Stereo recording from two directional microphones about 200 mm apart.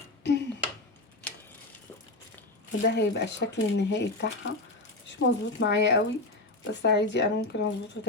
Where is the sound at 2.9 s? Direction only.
60° left (ahead or behind).